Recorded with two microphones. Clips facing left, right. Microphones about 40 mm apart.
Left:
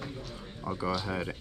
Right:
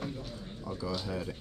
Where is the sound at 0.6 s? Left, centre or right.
Left.